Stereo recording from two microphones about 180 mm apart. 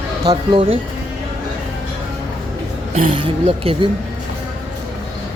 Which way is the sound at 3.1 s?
30° right (ahead or behind).